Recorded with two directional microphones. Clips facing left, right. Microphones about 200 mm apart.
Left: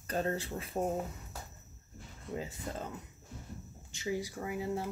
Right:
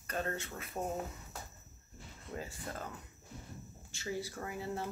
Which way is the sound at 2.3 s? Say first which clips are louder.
Left 4 dB; 20° left (ahead or behind).